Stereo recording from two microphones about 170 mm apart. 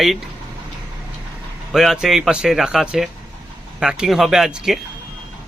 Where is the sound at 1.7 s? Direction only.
Centre (ahead or behind).